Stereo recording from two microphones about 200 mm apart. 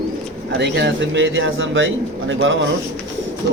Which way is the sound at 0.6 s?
65° right (ahead or behind).